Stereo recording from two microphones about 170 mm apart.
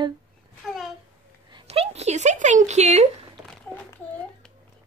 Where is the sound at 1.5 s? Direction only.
30° right (ahead or behind).